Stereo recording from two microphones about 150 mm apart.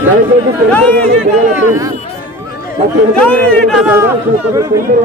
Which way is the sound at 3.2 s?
5° left (ahead or behind).